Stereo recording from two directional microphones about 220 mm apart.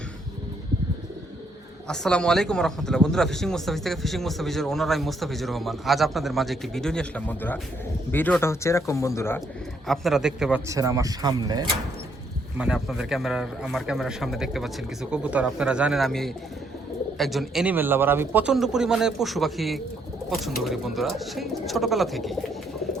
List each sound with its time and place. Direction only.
1.9 s speech: 5° left (ahead or behind)
9.8 s speech: centre (ahead or behind)
10.7 s speech: 15° right (ahead or behind)
12.5 s speech: 5° right (ahead or behind)